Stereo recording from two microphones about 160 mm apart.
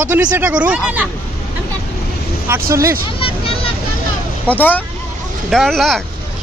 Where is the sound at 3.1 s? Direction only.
35° left (ahead or behind).